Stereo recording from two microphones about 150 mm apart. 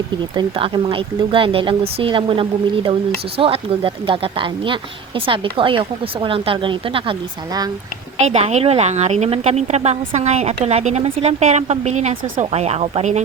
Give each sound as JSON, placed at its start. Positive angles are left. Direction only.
{"t": 0.2, "sound": "speech", "side_deg": -35}
{"t": 8.2, "sound": "a woman's voice", "side_deg": -45}